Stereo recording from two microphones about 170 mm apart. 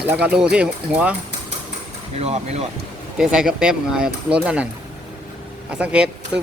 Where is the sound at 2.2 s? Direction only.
40° right (ahead or behind).